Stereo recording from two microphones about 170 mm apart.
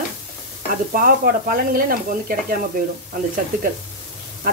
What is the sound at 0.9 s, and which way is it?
Speech, 60° right (ahead or behind).